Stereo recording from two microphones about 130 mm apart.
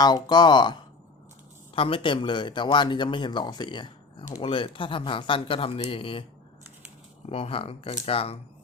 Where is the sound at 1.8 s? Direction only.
45° left (ahead or behind).